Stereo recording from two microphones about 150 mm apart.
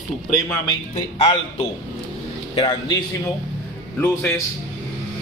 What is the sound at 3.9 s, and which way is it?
Speech, 10° left (ahead or behind).